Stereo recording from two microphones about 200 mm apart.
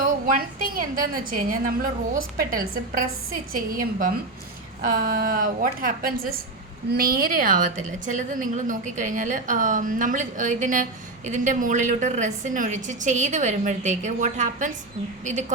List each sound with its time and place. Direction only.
0.0 s a woman's voice: 45° right (ahead or behind)